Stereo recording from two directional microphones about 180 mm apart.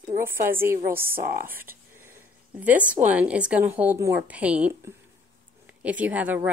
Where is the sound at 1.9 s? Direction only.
15° right (ahead or behind).